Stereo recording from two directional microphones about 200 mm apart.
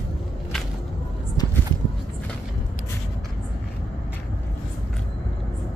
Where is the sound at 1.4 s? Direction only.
20° left (ahead or behind).